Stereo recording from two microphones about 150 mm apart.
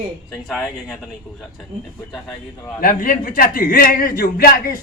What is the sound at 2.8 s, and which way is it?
A man's voice, 70° left (ahead or behind).